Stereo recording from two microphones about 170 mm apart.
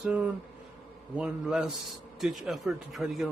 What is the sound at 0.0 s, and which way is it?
A man's voice, 5° right (ahead or behind).